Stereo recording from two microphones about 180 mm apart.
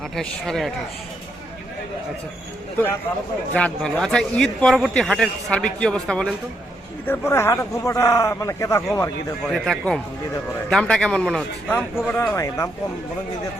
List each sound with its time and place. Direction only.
0.2 s a man's voice: centre (ahead or behind)
3.5 s a man's voice: 5° left (ahead or behind)
9.5 s a man's voice: centre (ahead or behind)